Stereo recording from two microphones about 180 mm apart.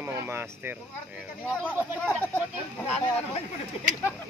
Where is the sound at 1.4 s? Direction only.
10° left (ahead or behind).